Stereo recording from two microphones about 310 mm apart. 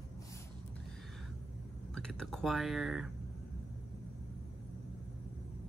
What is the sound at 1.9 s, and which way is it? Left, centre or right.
Speech, centre.